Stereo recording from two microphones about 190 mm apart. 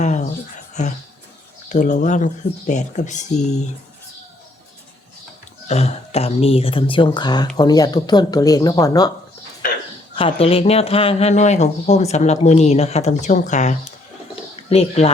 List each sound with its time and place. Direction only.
0.0 s a sound: 40° left (ahead or behind)
0.7 s speech: 40° left (ahead or behind)
5.6 s speech: 35° left (ahead or behind); by 9.1 s 20° left (ahead or behind)
10.2 s speech: 30° left (ahead or behind)